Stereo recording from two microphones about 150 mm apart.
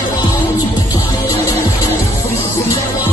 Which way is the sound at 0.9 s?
20° left (ahead or behind).